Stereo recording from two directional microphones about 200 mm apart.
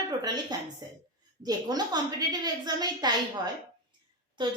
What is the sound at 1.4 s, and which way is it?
Speech, 20° right (ahead or behind).